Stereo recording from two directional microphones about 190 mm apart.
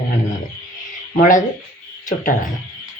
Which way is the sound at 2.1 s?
45° left (ahead or behind).